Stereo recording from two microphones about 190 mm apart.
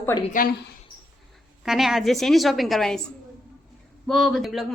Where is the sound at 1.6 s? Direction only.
Centre (ahead or behind).